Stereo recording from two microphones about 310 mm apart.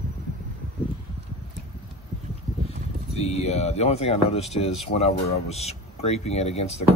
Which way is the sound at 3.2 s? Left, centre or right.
Left.